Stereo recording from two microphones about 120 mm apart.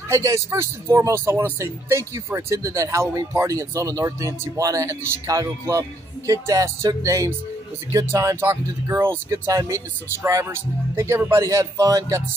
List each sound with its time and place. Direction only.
0.1 s speech: 25° right (ahead or behind)